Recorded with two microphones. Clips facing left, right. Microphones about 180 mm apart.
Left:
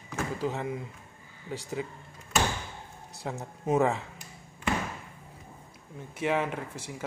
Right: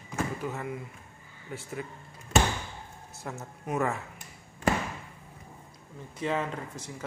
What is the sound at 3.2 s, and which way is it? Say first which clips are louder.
Speech: left 6 dB; 20° left (ahead or behind).